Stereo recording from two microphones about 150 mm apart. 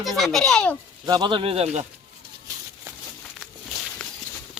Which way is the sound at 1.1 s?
30° right (ahead or behind).